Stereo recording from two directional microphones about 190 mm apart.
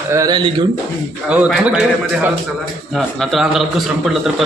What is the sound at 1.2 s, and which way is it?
A man's voice, 5° right (ahead or behind).